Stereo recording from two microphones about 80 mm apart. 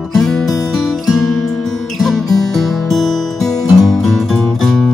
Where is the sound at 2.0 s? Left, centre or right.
Centre.